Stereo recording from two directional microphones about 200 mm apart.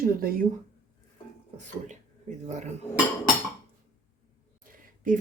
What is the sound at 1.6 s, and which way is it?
Speech, 35° right (ahead or behind).